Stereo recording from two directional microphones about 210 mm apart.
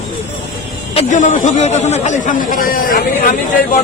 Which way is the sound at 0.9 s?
35° left (ahead or behind).